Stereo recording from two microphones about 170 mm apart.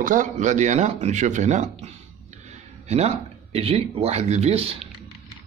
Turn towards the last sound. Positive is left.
turn(degrees=-35)  # may be behind; listen again after turning